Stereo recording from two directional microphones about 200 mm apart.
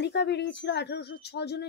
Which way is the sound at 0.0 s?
55° left (ahead or behind).